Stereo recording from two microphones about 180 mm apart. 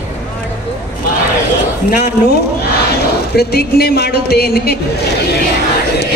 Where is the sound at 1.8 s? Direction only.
55° left (ahead or behind).